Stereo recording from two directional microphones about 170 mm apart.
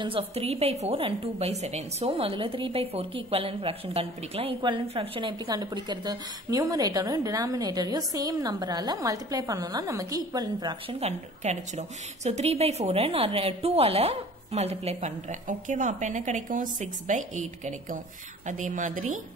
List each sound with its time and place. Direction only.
0.0 s a woman's voice: 35° right (ahead or behind); by 19.1 s 50° right (ahead or behind)